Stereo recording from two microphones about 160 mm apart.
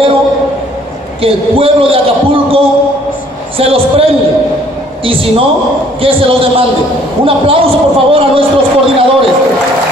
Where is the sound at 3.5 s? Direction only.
35° right (ahead or behind).